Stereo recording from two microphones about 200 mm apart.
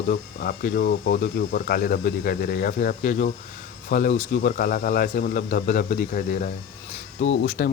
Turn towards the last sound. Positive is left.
turn(degrees=50)  # may be behind; listen again after turning